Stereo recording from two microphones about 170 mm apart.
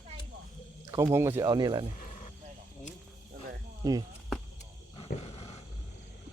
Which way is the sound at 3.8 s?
20° right (ahead or behind).